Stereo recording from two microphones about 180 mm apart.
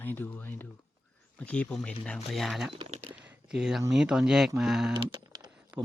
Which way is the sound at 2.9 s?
40° right (ahead or behind).